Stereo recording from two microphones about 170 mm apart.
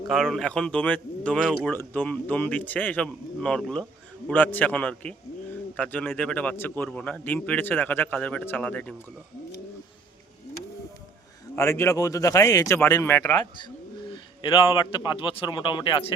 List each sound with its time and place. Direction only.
0.1 s speech: centre (ahead or behind)
11.5 s speech: 15° left (ahead or behind)
14.1 s a man's voice: 30° left (ahead or behind)